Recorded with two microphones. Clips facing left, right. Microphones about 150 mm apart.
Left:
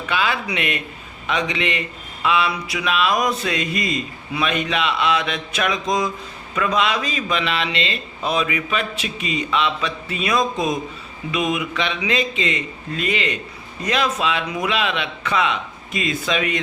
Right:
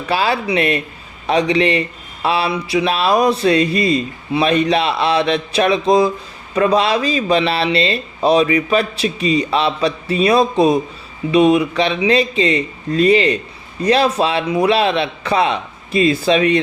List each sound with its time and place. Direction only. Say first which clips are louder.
0.1 s speech: right 6 dB; 35° right (ahead or behind)